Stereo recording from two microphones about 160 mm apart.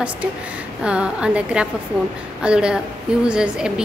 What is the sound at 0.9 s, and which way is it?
A woman's voice, 5° right (ahead or behind).